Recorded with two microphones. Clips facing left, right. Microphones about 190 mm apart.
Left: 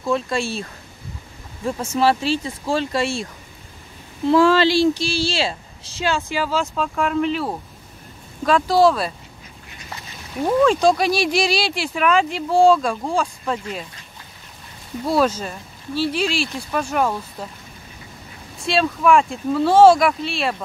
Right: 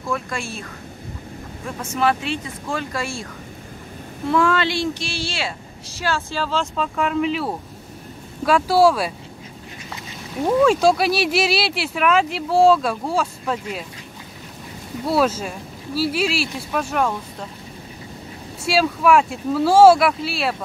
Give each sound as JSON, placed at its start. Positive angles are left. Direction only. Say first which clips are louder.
{"t": 0.1, "sound": "speech", "louder": "left 5 dB", "side_deg": 30}
{"t": 1.8, "sound": "speech", "louder": "left 2 dB", "side_deg": 30}
{"t": 4.3, "sound": "speech", "louder": "left 5 dB", "side_deg": 30}
{"t": 10.4, "sound": "speech", "louder": "even", "side_deg": -5}
{"t": 15.0, "sound": "speech", "louder": "even", "side_deg": -5}
{"t": 18.6, "sound": "speech", "louder": "right 1 dB", "side_deg": -5}